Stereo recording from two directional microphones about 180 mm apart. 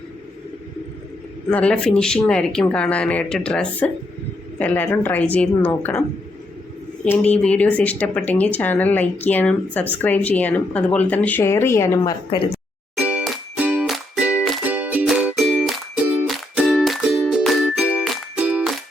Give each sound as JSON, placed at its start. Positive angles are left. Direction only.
{"t": 1.5, "sound": "speech", "side_deg": 5}
{"t": 7.0, "sound": "speech", "side_deg": 10}
{"t": 13.0, "sound": "music", "side_deg": -5}